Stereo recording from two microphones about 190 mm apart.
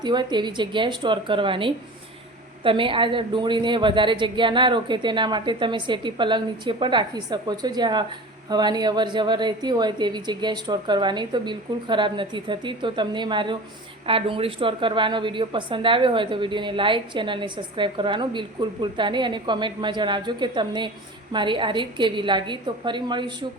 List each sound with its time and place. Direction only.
0.0 s a woman's voice: 25° right (ahead or behind)